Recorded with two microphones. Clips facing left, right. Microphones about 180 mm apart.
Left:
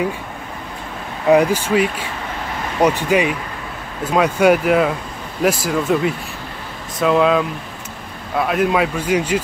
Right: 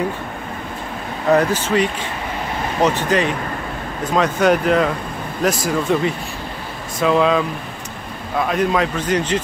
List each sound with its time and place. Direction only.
1.3 s a man's voice: 10° left (ahead or behind)